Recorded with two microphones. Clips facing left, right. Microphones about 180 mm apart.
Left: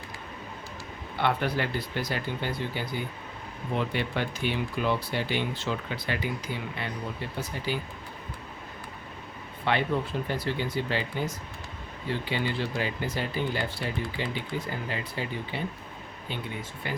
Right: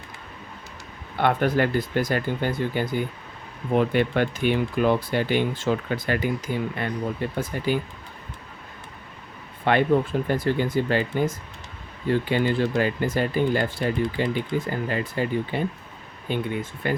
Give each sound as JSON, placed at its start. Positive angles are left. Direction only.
{"t": 1.2, "sound": "speech", "side_deg": -50}
{"t": 9.6, "sound": "speech", "side_deg": -50}